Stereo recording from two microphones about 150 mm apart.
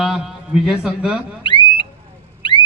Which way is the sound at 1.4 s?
35° left (ahead or behind).